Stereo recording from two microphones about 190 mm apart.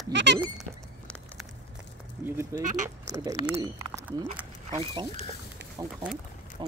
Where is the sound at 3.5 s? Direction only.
20° right (ahead or behind).